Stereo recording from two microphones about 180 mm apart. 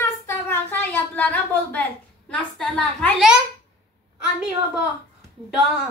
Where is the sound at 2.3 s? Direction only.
5° left (ahead or behind).